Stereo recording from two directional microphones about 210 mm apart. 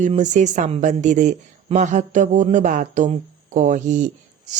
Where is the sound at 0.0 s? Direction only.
35° right (ahead or behind).